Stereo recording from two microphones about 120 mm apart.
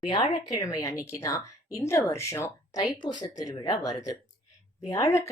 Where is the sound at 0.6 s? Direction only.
30° left (ahead or behind).